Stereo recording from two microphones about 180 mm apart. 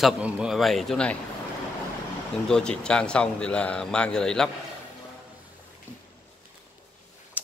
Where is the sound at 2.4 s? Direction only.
5° left (ahead or behind).